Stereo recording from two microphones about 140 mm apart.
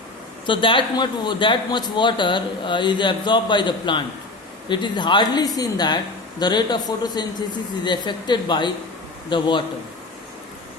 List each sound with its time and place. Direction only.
0.4 s a man's voice: 35° left (ahead or behind)